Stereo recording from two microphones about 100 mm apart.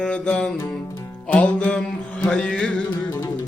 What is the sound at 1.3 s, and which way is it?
Music, 15° left (ahead or behind).